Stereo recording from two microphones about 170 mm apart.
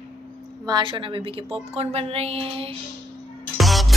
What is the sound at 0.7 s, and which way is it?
A woman's voice, 25° right (ahead or behind).